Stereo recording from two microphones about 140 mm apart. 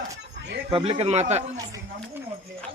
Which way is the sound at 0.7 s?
40° right (ahead or behind).